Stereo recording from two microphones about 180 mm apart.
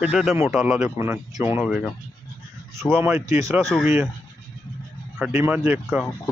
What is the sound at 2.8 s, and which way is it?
Speech, 15° right (ahead or behind).